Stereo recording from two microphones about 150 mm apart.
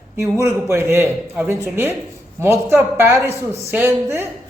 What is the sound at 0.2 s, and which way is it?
A man's voice, 15° right (ahead or behind).